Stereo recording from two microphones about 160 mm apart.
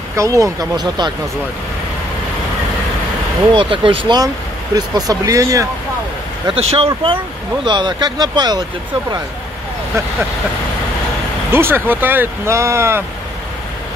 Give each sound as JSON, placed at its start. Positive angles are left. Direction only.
{"t": 0.1, "sound": "speech", "side_deg": -20}
{"t": 3.5, "sound": "speech", "side_deg": -35}
{"t": 6.4, "sound": "speech", "side_deg": -35}
{"t": 11.5, "sound": "speech", "side_deg": -15}